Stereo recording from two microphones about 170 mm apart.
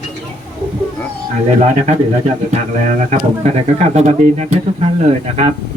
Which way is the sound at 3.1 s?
40° right (ahead or behind).